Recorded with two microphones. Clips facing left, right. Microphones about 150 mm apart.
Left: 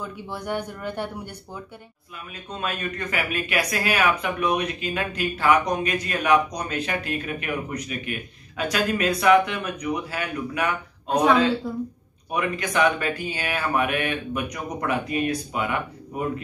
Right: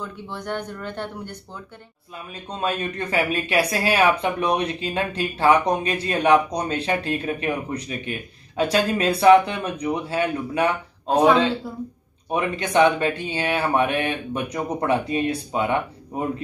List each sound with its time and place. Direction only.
0.0 s speech: 10° left (ahead or behind)
2.5 s speech: 30° right (ahead or behind)
11.6 s speech: centre (ahead or behind)
12.3 s speech: 30° right (ahead or behind)